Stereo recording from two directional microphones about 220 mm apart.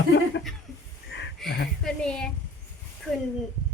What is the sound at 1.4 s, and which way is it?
A woman's voice, centre (ahead or behind).